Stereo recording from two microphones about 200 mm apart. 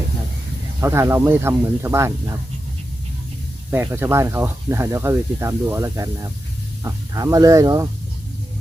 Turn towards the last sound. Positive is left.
turn(degrees=-15)  # may be behind; listen again after turning